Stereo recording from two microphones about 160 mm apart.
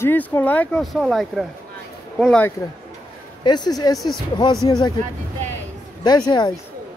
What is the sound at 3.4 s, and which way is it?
Speech, 25° left (ahead or behind).